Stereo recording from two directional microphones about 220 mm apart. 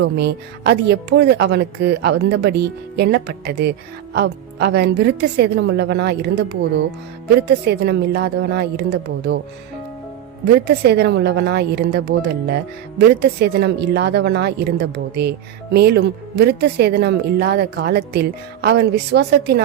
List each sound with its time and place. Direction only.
0.0 s a woman's voice: 50° right (ahead or behind)
10.7 s a woman's voice: 50° right (ahead or behind)